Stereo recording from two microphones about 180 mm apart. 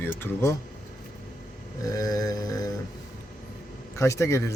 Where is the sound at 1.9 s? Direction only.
20° left (ahead or behind).